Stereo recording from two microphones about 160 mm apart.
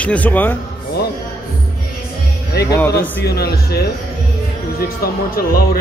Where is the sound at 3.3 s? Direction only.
85° left.